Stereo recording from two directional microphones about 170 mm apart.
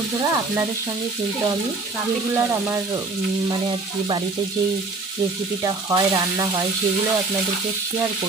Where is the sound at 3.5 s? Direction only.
30° right (ahead or behind).